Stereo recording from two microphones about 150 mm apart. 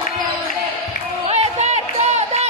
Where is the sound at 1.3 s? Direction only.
45° right (ahead or behind).